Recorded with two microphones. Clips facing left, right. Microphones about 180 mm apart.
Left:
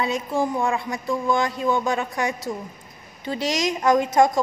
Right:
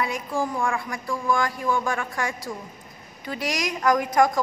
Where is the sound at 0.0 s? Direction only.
25° left (ahead or behind).